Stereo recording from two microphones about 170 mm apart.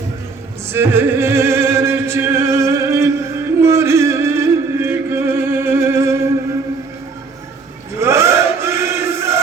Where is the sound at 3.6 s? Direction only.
15° right (ahead or behind).